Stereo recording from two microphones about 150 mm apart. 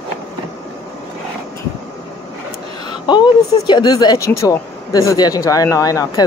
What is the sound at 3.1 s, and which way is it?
Speech, 30° left (ahead or behind).